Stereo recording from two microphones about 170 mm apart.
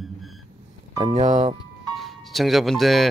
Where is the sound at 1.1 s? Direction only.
45° right (ahead or behind).